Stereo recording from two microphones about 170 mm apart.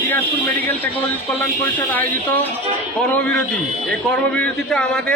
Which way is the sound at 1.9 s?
10° left (ahead or behind).